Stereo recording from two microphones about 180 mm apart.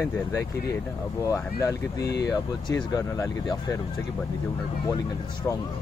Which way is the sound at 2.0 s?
65° left (ahead or behind).